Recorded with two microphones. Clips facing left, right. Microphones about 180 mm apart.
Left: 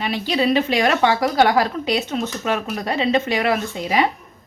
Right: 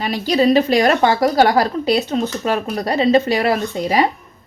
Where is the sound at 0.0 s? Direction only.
40° right (ahead or behind).